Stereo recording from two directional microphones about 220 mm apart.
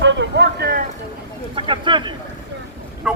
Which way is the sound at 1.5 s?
20° right (ahead or behind).